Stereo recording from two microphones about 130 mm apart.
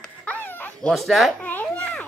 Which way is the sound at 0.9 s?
Centre (ahead or behind).